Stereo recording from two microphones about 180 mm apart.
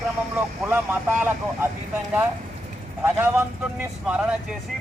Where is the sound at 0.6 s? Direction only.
10° right (ahead or behind).